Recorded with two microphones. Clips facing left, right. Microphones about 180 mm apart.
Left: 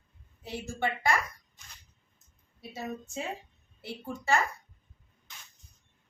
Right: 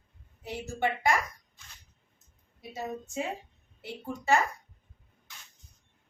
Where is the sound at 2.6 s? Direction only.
15° right (ahead or behind).